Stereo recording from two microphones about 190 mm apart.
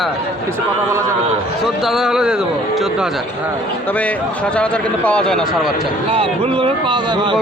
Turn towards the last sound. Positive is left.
turn(degrees=-25)  # may be behind; listen again after turning